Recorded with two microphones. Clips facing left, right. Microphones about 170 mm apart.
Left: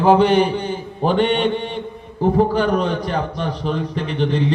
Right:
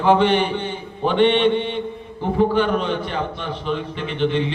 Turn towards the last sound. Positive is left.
turn(degrees=40)  # may be behind; listen again after turning